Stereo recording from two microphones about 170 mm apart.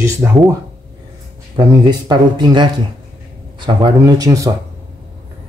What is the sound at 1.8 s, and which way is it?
Speech, 25° right (ahead or behind).